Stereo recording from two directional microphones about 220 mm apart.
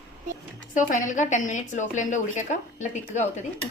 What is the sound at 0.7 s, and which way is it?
A woman's voice, 35° left (ahead or behind).